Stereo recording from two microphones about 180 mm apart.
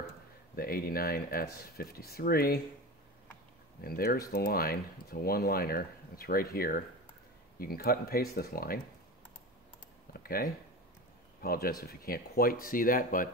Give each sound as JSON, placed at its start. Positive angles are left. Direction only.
{"t": 0.6, "sound": "speech", "side_deg": 55}
{"t": 3.8, "sound": "speech", "side_deg": 55}
{"t": 10.1, "sound": "a sound", "side_deg": 55}
{"t": 11.4, "sound": "speech", "side_deg": 55}